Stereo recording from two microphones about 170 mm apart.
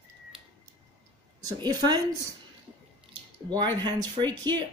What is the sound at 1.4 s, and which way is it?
Speech, 20° right (ahead or behind).